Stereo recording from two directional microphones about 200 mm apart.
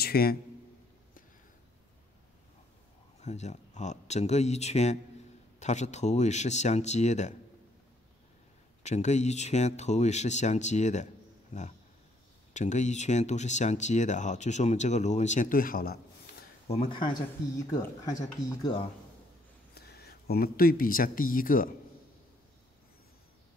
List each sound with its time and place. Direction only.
0.0 s a man's voice: 50° left (ahead or behind)
3.2 s speech: 35° left (ahead or behind)
8.8 s speech: 35° left (ahead or behind)
16.6 s speech: 30° left (ahead or behind)
19.7 s speech: 50° left (ahead or behind)